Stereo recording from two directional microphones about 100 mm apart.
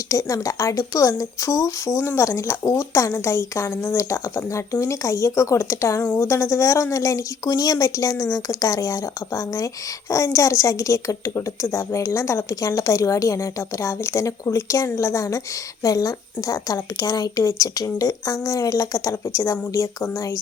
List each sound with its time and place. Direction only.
0.1 s a woman's voice: 30° left (ahead or behind)